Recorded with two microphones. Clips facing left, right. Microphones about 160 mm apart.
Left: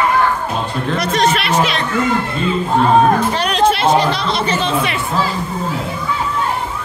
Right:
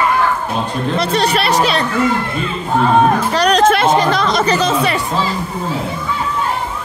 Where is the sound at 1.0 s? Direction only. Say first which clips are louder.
Even; 35° right (ahead or behind).